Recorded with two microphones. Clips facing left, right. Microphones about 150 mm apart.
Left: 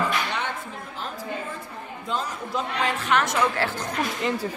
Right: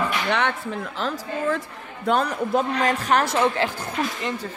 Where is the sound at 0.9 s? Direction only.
90° right.